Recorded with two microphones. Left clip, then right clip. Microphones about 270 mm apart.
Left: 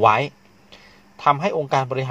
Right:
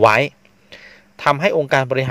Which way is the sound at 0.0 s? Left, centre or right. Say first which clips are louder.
Right 3 dB; right.